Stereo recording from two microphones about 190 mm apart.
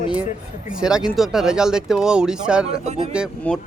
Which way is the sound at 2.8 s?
35° right (ahead or behind).